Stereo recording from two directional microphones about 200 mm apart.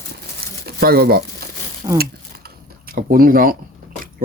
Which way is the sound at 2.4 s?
50° right (ahead or behind).